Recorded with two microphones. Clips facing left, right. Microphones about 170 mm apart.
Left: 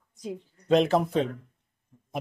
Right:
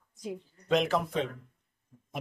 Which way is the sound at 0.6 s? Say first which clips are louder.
Left 5 dB; 30° left (ahead or behind).